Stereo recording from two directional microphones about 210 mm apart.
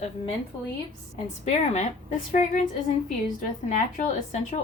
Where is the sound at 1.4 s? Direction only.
30° left (ahead or behind).